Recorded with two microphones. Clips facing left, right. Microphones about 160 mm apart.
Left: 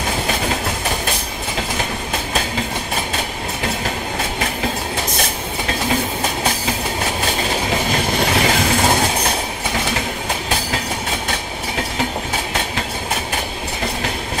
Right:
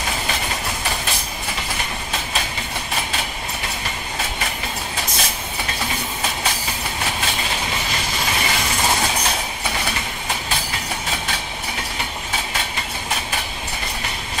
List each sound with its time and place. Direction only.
7.9 s train: 65° left (ahead or behind)